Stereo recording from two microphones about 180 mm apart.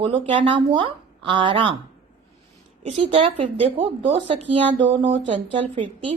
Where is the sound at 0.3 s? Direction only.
30° right (ahead or behind).